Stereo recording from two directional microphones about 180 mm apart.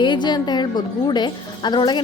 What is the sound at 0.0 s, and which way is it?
Speech, 25° left (ahead or behind).